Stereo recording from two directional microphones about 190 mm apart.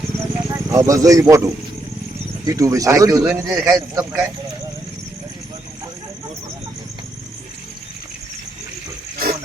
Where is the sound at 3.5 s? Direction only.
Centre (ahead or behind).